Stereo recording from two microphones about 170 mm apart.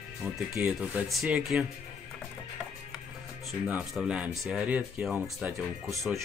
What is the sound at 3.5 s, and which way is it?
Speech, 5° right (ahead or behind).